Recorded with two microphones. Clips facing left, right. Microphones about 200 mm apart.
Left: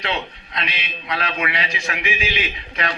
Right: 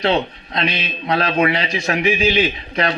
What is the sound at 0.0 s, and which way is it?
A man's voice, 35° right (ahead or behind).